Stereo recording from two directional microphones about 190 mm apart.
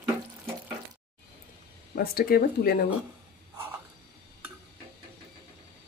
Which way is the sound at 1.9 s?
50° left (ahead or behind).